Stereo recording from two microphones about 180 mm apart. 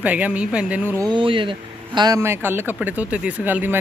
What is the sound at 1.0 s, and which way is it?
Speech, 30° right (ahead or behind).